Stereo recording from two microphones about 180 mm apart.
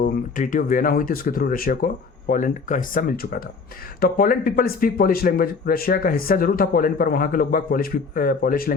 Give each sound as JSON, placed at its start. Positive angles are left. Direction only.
{"t": 0.0, "sound": "speech", "side_deg": 45}